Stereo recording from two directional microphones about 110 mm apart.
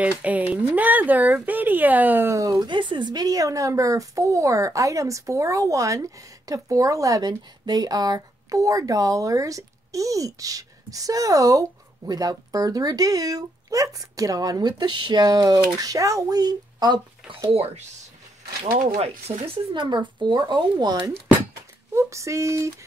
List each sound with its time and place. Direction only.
0.0 s speech: 15° right (ahead or behind)
2.6 s speech: 45° right (ahead or behind)
17.5 s speech: 70° right (ahead or behind); by 21.1 s 40° right (ahead or behind)
21.9 s speech: 25° right (ahead or behind)